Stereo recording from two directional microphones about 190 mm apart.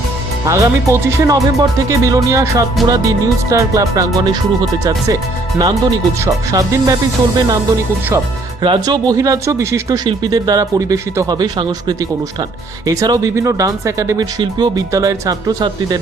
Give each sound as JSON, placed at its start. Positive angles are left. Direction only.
{"t": 0.4, "sound": "speech", "side_deg": -15}
{"t": 8.6, "sound": "speech", "side_deg": -25}